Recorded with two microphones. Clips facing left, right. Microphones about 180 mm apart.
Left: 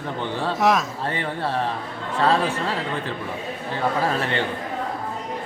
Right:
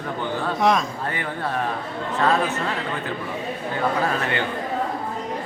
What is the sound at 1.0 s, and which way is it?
A man's voice, 30° left (ahead or behind).